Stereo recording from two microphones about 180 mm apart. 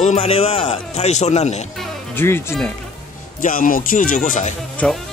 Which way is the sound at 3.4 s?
50° left (ahead or behind).